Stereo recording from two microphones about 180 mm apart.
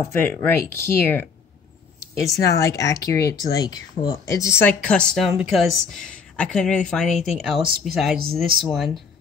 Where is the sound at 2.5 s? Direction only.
20° left (ahead or behind); by 8.9 s centre (ahead or behind).